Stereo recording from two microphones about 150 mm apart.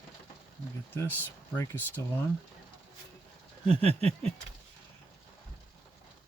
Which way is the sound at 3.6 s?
45° right (ahead or behind).